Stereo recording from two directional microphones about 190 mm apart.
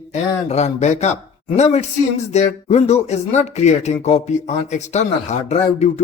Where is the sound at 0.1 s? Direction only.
35° left (ahead or behind).